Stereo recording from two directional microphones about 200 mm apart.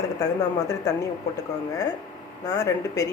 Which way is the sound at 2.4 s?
15° left (ahead or behind).